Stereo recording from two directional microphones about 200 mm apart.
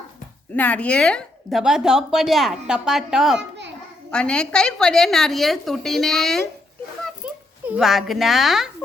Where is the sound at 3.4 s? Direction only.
60° right (ahead or behind).